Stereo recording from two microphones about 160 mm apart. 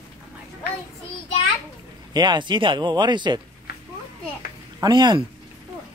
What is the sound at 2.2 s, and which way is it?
Speech, 30° right (ahead or behind).